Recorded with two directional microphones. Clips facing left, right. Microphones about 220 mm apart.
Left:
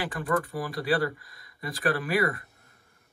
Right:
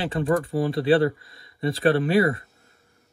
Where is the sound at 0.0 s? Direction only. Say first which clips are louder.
Right 5 dB; 25° right (ahead or behind).